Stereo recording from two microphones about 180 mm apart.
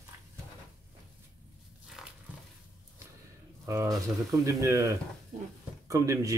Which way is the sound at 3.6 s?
15° right (ahead or behind).